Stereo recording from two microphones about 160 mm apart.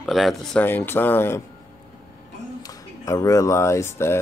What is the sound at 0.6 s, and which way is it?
Speech, 15° left (ahead or behind).